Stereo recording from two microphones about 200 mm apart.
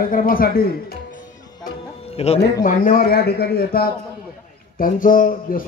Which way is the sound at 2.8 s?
45° left (ahead or behind).